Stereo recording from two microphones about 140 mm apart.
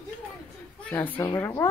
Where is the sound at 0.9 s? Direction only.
10° left (ahead or behind).